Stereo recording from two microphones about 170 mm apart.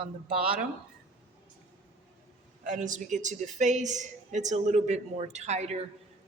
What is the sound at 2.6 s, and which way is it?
A woman's voice, 50° right (ahead or behind).